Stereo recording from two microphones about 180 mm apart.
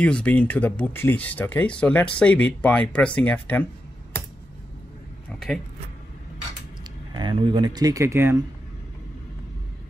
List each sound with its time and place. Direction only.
0.0 s speech: 5° left (ahead or behind)
5.3 s a sound: centre (ahead or behind)
7.2 s speech: 25° right (ahead or behind)